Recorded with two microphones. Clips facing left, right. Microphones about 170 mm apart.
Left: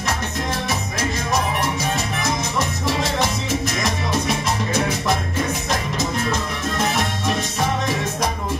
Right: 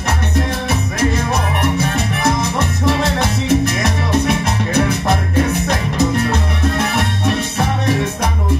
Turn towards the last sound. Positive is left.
turn(degrees=-60)  # may be behind; listen again after turning